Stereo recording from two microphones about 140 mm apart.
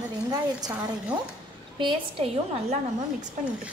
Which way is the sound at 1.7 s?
40° right (ahead or behind).